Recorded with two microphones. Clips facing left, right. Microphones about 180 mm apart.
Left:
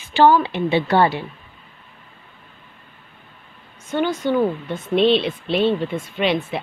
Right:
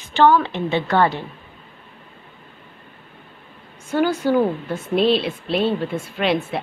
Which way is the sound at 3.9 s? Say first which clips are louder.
Right 2 dB; 5° right (ahead or behind).